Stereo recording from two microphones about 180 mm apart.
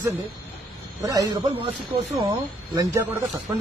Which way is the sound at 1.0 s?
20° right (ahead or behind).